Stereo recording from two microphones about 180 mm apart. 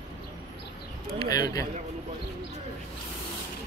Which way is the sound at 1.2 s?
20° left (ahead or behind).